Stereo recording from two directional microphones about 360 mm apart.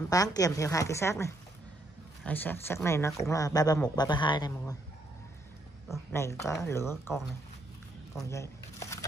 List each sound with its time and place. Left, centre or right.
0.1 s speech: centre
5.9 s speech: centre
8.1 s a sound: centre